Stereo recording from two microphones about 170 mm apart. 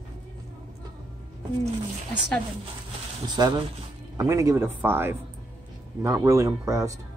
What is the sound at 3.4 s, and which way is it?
Speech, 25° right (ahead or behind).